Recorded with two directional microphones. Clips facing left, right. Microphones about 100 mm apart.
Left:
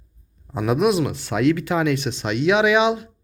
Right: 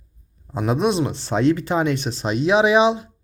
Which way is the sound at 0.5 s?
30° right (ahead or behind).